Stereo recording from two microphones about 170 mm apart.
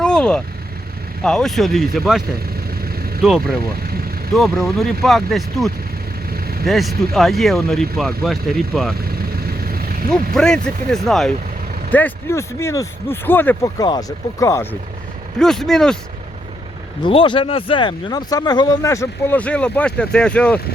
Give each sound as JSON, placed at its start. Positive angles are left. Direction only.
{"t": 0.0, "sound": "vehicle", "side_deg": 5}
{"t": 1.2, "sound": "speech", "side_deg": 5}
{"t": 3.2, "sound": "speech", "side_deg": 0}
{"t": 4.6, "sound": "speech", "side_deg": 0}
{"t": 6.3, "sound": "vehicle", "side_deg": -65}
{"t": 6.7, "sound": "speech", "side_deg": 0}
{"t": 9.0, "sound": "vehicle", "side_deg": -60}
{"t": 10.3, "sound": "speech", "side_deg": 5}
{"t": 15.4, "sound": "speech", "side_deg": 5}
{"t": 17.0, "sound": "speech", "side_deg": 30}